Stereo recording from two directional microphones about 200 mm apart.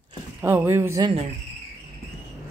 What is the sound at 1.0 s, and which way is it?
Speech, 25° right (ahead or behind).